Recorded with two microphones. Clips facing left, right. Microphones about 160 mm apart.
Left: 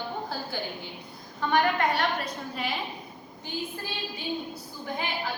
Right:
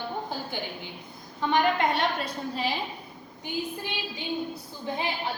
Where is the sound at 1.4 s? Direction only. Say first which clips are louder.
Right 1 dB; 20° right (ahead or behind).